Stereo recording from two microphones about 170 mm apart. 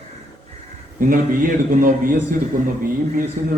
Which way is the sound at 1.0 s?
55° right (ahead or behind).